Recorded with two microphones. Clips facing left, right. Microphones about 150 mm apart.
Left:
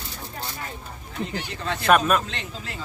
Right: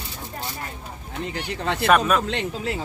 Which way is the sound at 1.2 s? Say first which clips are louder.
Right 2 dB; 65° right (ahead or behind).